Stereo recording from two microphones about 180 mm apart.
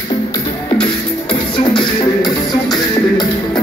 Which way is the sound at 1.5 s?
25° left (ahead or behind).